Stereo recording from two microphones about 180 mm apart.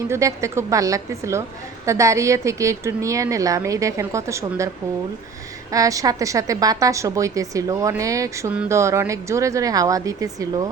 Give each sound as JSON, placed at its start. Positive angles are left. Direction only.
{"t": 0.1, "sound": "a woman's voice", "side_deg": -15}
{"t": 5.7, "sound": "a woman's voice", "side_deg": -20}